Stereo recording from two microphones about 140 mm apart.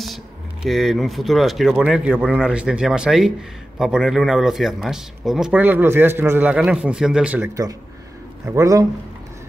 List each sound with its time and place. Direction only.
0.7 s speech: centre (ahead or behind)
8.5 s a man's voice: 20° right (ahead or behind)